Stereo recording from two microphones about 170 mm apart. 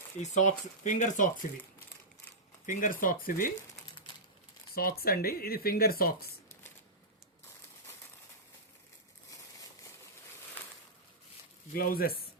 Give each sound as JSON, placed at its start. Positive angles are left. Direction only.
{"t": 0.2, "sound": "speech", "side_deg": 45}
{"t": 2.6, "sound": "speech", "side_deg": 50}
{"t": 4.7, "sound": "speech", "side_deg": 60}
{"t": 11.7, "sound": "speech", "side_deg": 60}